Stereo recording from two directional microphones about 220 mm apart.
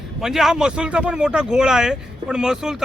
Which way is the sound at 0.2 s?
Centre (ahead or behind).